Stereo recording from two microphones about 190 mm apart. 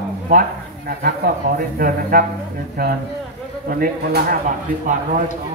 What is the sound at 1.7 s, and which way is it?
Speech, 50° right (ahead or behind).